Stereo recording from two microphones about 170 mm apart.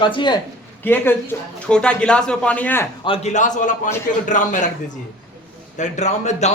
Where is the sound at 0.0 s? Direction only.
30° left (ahead or behind).